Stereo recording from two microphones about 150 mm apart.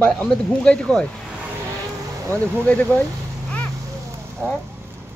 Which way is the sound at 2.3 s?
10° left (ahead or behind).